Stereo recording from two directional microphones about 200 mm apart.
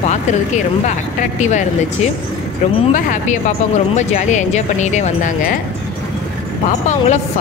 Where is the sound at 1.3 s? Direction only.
35° left (ahead or behind).